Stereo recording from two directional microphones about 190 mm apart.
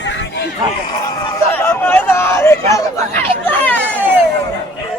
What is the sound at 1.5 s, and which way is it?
Hubbub, 10° left (ahead or behind).